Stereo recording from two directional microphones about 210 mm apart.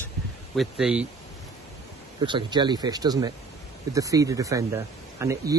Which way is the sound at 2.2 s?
20° right (ahead or behind).